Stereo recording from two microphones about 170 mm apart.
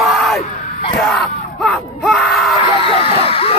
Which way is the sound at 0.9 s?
5° left (ahead or behind).